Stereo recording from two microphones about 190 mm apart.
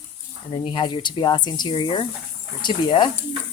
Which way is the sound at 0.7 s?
25° left (ahead or behind).